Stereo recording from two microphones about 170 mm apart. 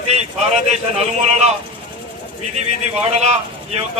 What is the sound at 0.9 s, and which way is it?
Speech, 40° right (ahead or behind).